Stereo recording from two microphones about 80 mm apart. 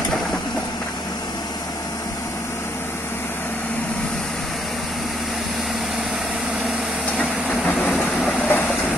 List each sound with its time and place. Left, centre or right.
8.2 s train: centre